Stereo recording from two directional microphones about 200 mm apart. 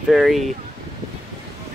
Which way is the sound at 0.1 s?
Centre (ahead or behind).